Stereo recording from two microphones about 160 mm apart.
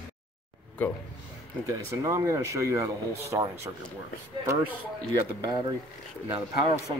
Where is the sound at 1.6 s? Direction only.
20° right (ahead or behind).